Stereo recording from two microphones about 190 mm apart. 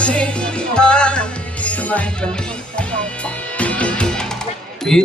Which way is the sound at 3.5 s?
5° left (ahead or behind).